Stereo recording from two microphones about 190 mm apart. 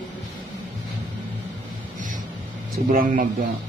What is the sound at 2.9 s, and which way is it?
Speech, 45° right (ahead or behind).